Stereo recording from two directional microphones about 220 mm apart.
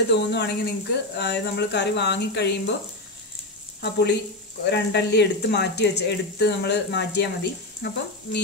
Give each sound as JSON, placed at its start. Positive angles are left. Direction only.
{"t": 0.1, "sound": "speech", "side_deg": 50}
{"t": 3.8, "sound": "speech", "side_deg": 50}